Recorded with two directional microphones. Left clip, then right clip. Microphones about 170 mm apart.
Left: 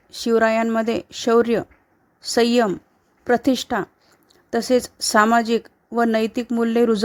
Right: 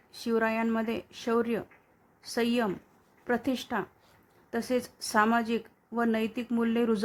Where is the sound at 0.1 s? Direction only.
45° left (ahead or behind).